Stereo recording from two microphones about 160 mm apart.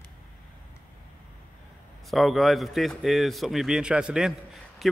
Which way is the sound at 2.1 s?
Centre (ahead or behind).